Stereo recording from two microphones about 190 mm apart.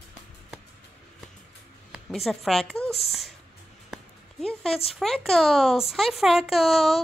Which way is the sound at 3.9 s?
5° left (ahead or behind).